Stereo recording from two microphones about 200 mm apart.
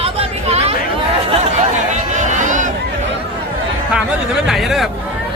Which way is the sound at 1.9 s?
40° right (ahead or behind).